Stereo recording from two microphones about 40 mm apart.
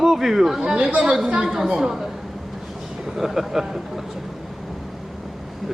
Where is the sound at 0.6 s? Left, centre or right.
Right.